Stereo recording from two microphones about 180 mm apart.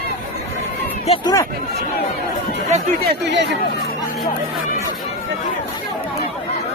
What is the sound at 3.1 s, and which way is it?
Speech, 70° right (ahead or behind).